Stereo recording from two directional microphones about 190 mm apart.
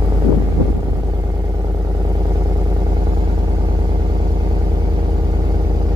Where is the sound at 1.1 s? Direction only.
20° right (ahead or behind).